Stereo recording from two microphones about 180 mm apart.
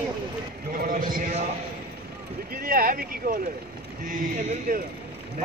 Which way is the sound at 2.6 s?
55° right (ahead or behind).